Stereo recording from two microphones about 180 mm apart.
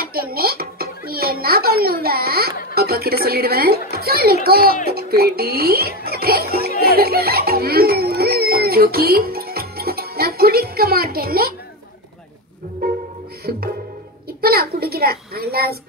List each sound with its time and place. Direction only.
0.0 s a child's voice: 60° right (ahead or behind)
6.8 s music: 60° right (ahead or behind)
13.5 s a child's voice: 60° right (ahead or behind)